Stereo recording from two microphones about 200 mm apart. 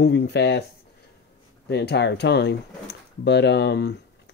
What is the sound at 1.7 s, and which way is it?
Speech, 55° left (ahead or behind).